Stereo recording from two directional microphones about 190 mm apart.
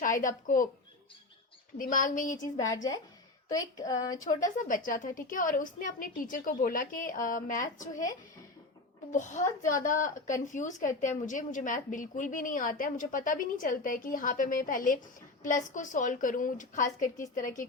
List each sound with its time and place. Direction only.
0.0 s a woman's voice: 45° left (ahead or behind)
1.8 s a woman's voice: 45° left (ahead or behind)
2.6 s speech: 20° left (ahead or behind)
4.3 s a woman's voice: 40° left (ahead or behind)
9.1 s a woman's voice: 40° left (ahead or behind)